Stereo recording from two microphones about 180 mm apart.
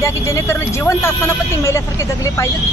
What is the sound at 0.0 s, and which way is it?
Speech, 15° left (ahead or behind).